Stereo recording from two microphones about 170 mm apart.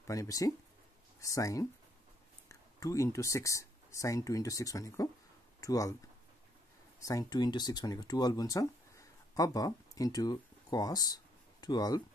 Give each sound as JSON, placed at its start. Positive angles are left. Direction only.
{"t": 0.0, "sound": "speech", "side_deg": 20}
{"t": 7.1, "sound": "speech", "side_deg": 25}